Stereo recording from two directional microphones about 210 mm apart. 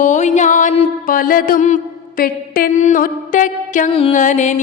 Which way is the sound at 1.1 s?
40° left (ahead or behind).